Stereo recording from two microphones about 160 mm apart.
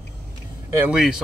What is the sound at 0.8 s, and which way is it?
Speech, 5° right (ahead or behind).